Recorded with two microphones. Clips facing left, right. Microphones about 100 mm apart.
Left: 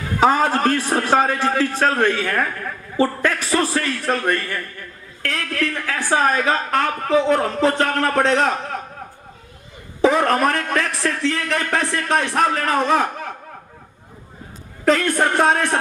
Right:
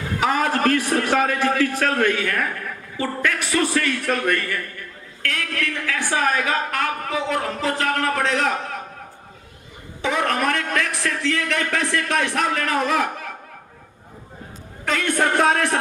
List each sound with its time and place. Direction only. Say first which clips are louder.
0.2 s a woman's voice: left 4 dB; 30° left (ahead or behind)
10.0 s a woman's voice: left 6 dB; 35° left (ahead or behind)
14.8 s a woman's voice: left 4 dB; 35° left (ahead or behind)